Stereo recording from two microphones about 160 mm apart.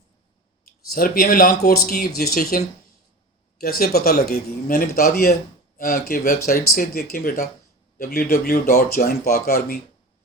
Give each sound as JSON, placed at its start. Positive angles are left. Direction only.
{"t": 0.9, "sound": "speech", "side_deg": 65}